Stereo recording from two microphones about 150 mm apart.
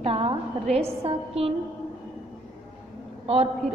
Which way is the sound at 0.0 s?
40° right (ahead or behind).